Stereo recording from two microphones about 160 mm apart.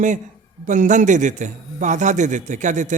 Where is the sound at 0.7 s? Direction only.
50° right (ahead or behind).